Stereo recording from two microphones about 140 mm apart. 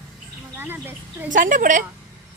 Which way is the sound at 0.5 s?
15° right (ahead or behind).